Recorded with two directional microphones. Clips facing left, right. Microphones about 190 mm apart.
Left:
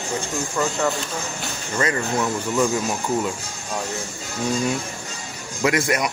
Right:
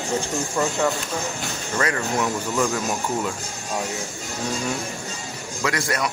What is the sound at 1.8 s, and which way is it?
Speech, 5° left (ahead or behind).